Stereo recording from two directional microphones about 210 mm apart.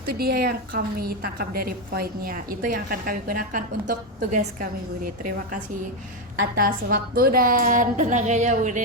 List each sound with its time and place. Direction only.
0.0 s a woman's voice: 45° right (ahead or behind)
6.6 s a woman's voice: 40° right (ahead or behind)